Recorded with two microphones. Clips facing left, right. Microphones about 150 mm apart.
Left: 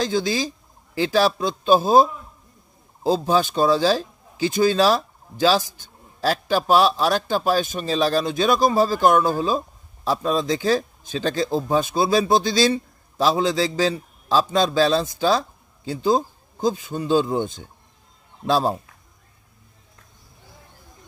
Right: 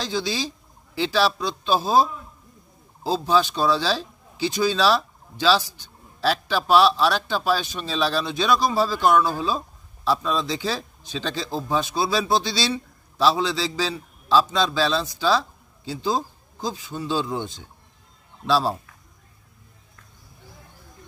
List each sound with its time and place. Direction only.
0.0 s speech: 50° left (ahead or behind)